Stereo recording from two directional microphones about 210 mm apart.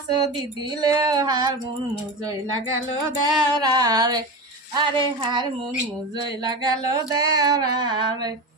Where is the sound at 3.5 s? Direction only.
20° right (ahead or behind).